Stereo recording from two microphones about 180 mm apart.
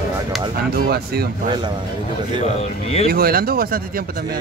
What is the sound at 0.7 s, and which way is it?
Speech, 60° right (ahead or behind).